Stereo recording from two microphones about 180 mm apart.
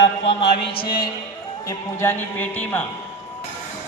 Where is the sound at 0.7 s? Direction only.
25° left (ahead or behind).